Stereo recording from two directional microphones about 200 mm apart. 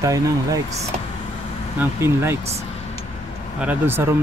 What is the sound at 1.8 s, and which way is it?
Speech, 10° right (ahead or behind).